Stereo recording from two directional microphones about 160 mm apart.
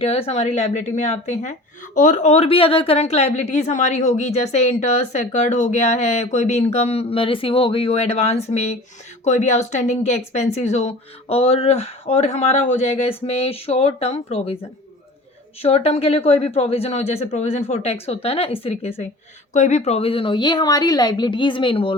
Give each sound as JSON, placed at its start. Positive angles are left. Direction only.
{"t": 0.0, "sound": "a woman's voice", "side_deg": 40}